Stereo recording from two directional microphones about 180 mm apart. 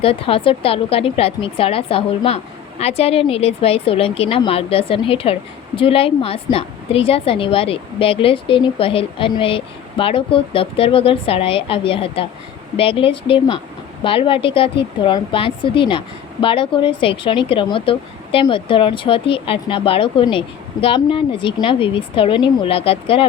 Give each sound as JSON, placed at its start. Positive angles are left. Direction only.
{"t": 0.0, "sound": "a woman's voice", "side_deg": 30}